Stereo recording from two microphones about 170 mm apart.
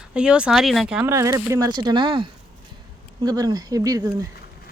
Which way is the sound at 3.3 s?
20° right (ahead or behind).